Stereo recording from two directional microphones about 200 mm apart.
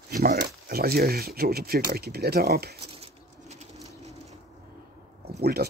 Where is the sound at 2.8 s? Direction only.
30° right (ahead or behind).